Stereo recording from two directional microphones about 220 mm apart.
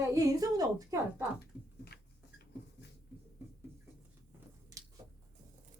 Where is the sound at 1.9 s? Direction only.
45° left (ahead or behind).